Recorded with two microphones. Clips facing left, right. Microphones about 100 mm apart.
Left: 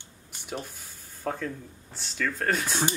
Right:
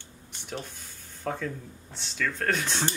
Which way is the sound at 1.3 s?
5° left (ahead or behind).